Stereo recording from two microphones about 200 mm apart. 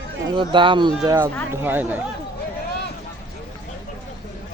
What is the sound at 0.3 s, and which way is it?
Speech, 25° right (ahead or behind).